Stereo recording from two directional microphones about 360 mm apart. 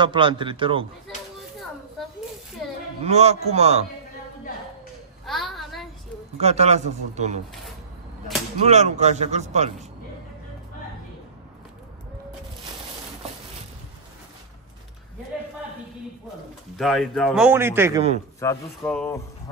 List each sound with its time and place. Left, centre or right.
0.0 s a man's voice: centre
3.0 s a man's voice: centre
5.2 s a sound: centre
6.4 s a man's voice: centre
8.6 s a man's voice: centre
16.7 s a man's voice: centre
18.4 s speech: centre